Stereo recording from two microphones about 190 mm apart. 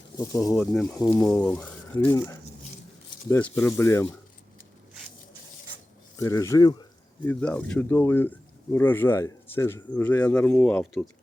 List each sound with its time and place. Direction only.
0.2 s speech: 15° left (ahead or behind)
0.5 s speech: 5° left (ahead or behind)
6.1 s speech: 15° left (ahead or behind)
7.3 s speech: 5° left (ahead or behind)